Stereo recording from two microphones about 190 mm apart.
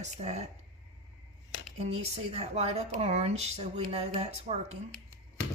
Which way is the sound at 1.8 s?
35° right (ahead or behind).